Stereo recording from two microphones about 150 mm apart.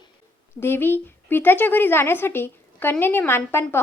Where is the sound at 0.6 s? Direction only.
15° left (ahead or behind).